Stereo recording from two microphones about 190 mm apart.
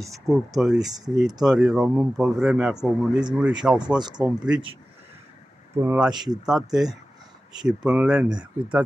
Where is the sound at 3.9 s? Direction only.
20° right (ahead or behind).